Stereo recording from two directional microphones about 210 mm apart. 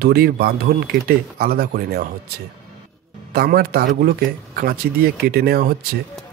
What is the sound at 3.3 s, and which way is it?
Speech, 50° right (ahead or behind).